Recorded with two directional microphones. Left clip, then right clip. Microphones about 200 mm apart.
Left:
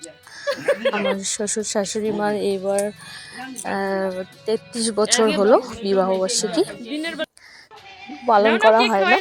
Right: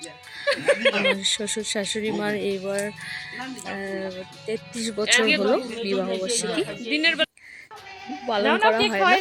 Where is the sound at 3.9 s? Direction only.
Centre (ahead or behind).